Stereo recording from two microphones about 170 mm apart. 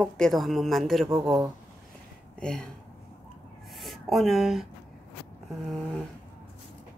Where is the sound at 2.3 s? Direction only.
5° left (ahead or behind).